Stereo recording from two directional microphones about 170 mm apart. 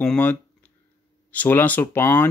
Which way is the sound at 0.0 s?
10° left (ahead or behind).